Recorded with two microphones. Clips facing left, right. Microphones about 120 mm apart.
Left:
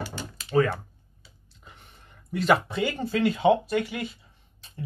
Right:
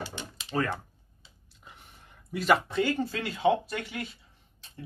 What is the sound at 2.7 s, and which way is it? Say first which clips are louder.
Speech: left 1 dB; 15° left (ahead or behind).